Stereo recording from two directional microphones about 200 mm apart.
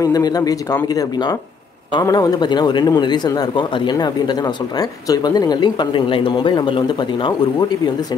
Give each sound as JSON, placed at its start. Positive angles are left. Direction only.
{"t": 0.0, "sound": "a man's voice", "side_deg": 20}